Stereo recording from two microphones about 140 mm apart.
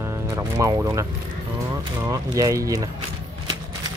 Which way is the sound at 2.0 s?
25° right (ahead or behind).